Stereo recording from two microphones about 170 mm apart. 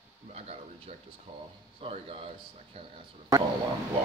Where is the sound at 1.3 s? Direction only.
35° right (ahead or behind).